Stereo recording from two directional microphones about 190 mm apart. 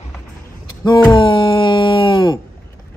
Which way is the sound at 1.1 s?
25° left (ahead or behind).